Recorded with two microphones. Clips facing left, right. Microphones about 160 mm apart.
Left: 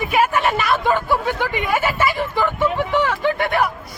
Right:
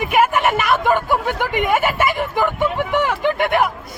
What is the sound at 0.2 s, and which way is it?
Speech, 20° right (ahead or behind).